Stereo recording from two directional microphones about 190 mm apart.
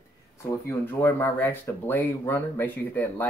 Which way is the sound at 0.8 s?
10° left (ahead or behind).